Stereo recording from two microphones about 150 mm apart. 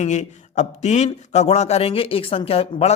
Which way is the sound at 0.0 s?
50° left (ahead or behind).